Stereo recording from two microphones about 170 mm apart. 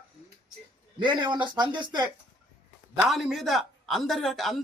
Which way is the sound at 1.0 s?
25° right (ahead or behind).